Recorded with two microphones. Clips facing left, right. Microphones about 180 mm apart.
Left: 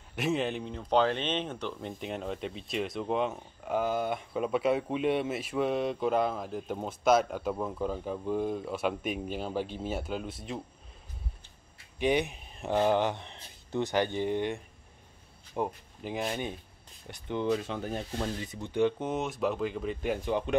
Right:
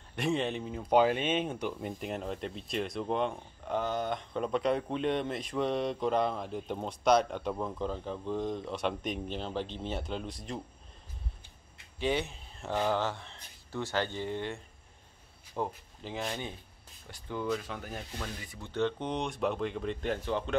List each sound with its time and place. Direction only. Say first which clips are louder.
0.1 s speech: left 1 dB; centre (ahead or behind)
12.0 s speech: left 4 dB; 15° left (ahead or behind)